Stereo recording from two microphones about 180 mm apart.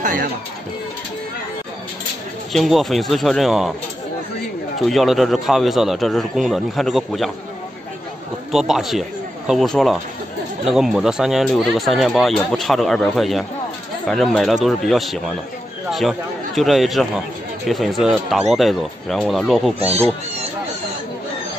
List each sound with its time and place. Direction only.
2.5 s speech: centre (ahead or behind)
4.7 s speech: centre (ahead or behind)
8.5 s speech: centre (ahead or behind)
19.8 s speech: 35° right (ahead or behind)